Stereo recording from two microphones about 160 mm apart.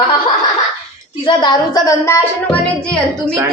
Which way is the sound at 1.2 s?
25° left (ahead or behind).